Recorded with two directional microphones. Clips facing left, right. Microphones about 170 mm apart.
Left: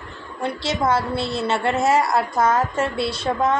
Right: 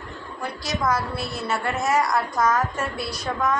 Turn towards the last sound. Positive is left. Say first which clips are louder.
# left 4 dB
turn(degrees=25)  # may be behind; listen again after turning